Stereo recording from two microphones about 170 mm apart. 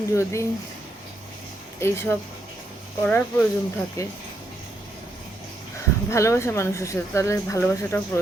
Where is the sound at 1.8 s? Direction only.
15° left (ahead or behind).